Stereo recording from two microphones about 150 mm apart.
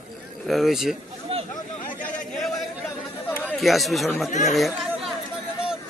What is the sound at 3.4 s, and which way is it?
Speech, centre (ahead or behind).